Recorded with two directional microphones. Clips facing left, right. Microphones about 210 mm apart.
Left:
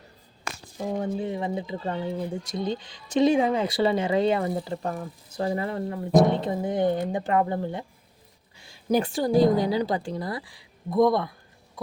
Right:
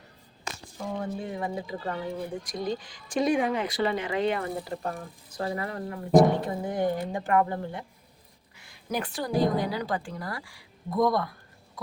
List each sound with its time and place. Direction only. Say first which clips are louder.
0.9 s speech: left 4 dB; 20° left (ahead or behind)
8.5 s a sound: left 8 dB; 25° left (ahead or behind)
9.6 s speech: left 5 dB; 25° left (ahead or behind)